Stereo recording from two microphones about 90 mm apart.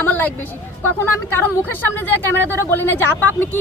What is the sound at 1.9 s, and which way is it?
Speech, 25° left (ahead or behind).